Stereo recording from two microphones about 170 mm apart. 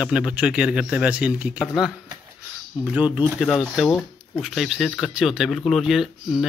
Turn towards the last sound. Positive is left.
turn(degrees=0)  # may be behind; listen again after turning